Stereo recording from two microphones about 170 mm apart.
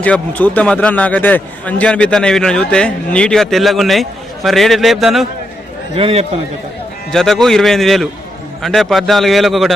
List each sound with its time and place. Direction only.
0.0 s a man's voice: 10° left (ahead or behind)
6.0 s a man's voice: 35° right (ahead or behind)
7.1 s a man's voice: centre (ahead or behind)